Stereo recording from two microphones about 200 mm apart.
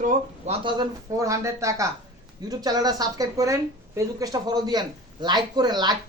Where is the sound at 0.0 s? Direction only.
30° right (ahead or behind).